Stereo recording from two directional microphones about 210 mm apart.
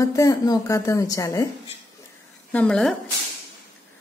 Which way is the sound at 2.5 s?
5° left (ahead or behind).